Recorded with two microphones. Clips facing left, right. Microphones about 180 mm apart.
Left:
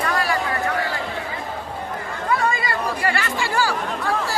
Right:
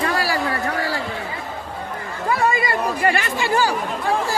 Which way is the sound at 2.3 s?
25° right (ahead or behind).